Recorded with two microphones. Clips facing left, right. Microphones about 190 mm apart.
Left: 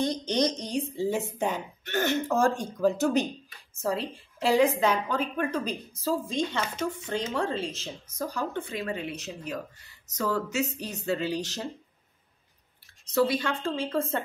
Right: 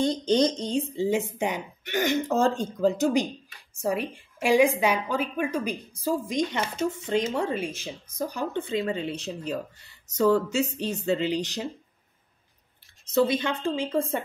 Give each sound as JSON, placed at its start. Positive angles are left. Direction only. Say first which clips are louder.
{"t": 0.0, "sound": "a woman's voice", "louder": "right 4 dB", "side_deg": -30}
{"t": 13.1, "sound": "a woman's voice", "louder": "right 2 dB", "side_deg": -20}